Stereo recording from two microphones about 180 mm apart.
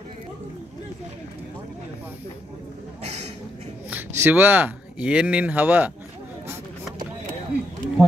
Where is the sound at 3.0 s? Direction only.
35° right (ahead or behind).